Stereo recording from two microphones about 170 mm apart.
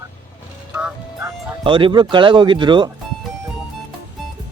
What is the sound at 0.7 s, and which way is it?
Music, 15° right (ahead or behind).